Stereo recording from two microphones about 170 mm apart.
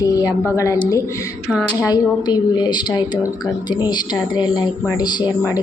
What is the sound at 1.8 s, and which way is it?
A woman's voice, 25° left (ahead or behind).